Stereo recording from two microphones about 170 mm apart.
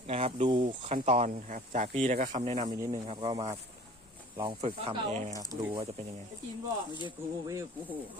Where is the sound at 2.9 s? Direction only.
30° right (ahead or behind).